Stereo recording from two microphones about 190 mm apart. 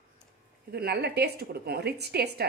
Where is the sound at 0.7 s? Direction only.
60° right (ahead or behind).